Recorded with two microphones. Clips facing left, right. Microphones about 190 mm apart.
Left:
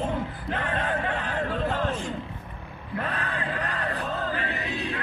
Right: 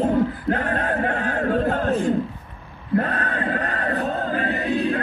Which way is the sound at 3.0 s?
55° right (ahead or behind).